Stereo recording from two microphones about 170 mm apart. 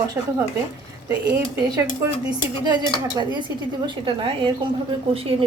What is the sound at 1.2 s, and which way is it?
Speech, 10° right (ahead or behind).